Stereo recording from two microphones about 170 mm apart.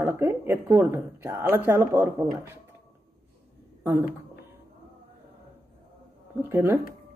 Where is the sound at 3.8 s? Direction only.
15° right (ahead or behind).